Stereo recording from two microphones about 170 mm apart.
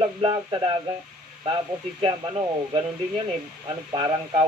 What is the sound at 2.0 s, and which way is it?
A man's voice, 30° right (ahead or behind).